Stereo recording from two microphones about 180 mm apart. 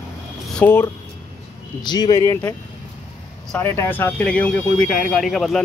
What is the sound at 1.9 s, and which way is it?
Speech, 20° left (ahead or behind).